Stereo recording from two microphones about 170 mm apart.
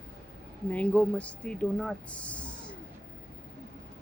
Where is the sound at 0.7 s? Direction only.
10° left (ahead or behind).